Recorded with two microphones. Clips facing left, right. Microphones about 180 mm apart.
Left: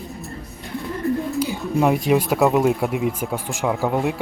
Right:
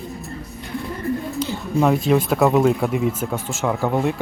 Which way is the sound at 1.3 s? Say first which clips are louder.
Left 1 dB; 10° left (ahead or behind).